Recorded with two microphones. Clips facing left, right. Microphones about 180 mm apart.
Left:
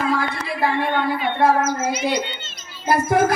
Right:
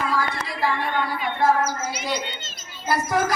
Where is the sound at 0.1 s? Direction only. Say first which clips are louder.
Left 3 dB; 60° left (ahead or behind).